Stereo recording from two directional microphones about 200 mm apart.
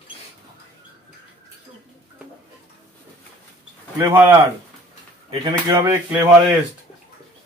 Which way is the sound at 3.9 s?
15° right (ahead or behind).